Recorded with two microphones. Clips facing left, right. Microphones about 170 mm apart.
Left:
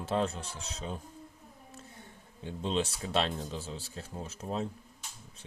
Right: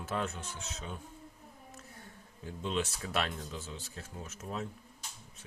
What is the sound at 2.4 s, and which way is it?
Speech, 30° left (ahead or behind).